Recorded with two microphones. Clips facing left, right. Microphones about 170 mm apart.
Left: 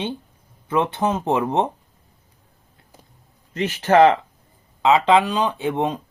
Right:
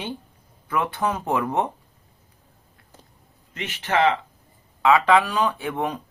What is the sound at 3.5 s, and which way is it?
Speech, 40° left (ahead or behind).